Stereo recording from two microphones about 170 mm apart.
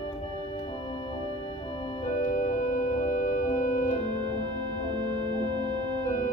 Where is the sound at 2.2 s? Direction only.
50° left (ahead or behind).